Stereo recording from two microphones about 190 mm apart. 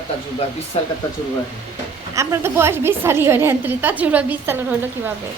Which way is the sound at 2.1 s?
15° right (ahead or behind).